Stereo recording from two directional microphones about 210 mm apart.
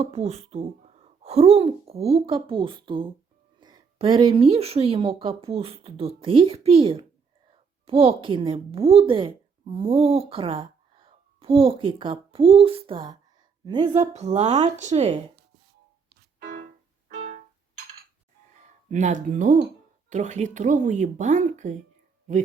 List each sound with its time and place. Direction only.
0.0 s a woman's voice: 30° right (ahead or behind)
17.1 s keyboard: 50° right (ahead or behind)
18.9 s speech: 35° right (ahead or behind)